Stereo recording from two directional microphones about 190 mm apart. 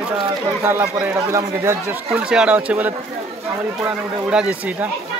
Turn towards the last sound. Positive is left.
turn(degrees=-5)  # may be behind; listen again after turning